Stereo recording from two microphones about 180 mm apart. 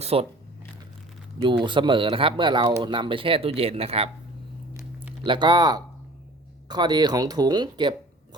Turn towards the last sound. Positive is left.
turn(degrees=-25)  # may be behind; listen again after turning